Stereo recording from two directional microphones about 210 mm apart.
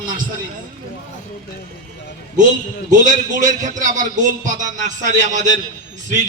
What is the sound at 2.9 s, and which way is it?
A man's voice, 40° right (ahead or behind).